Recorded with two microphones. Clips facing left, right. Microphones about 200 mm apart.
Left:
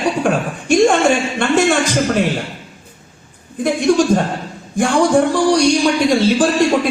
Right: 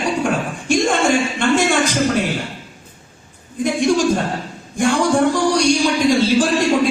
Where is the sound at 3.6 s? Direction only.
60° left (ahead or behind).